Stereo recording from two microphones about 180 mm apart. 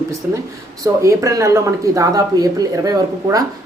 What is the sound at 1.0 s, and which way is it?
A woman's voice, 15° right (ahead or behind).